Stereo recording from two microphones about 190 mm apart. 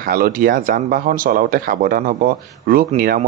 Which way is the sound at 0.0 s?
50° right (ahead or behind).